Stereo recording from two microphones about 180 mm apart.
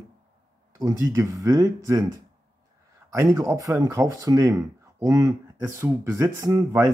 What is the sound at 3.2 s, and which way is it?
Speech, 15° right (ahead or behind).